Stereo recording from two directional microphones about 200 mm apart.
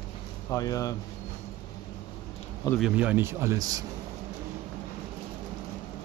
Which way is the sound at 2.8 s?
5° right (ahead or behind).